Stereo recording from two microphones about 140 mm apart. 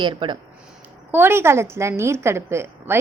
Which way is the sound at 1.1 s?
15° right (ahead or behind).